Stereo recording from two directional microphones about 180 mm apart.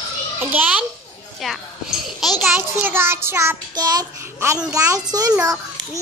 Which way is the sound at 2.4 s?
10° right (ahead or behind).